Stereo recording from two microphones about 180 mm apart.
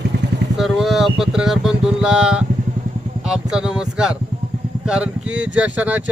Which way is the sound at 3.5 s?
5° right (ahead or behind).